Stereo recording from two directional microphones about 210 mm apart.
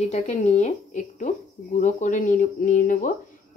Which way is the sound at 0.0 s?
30° left (ahead or behind).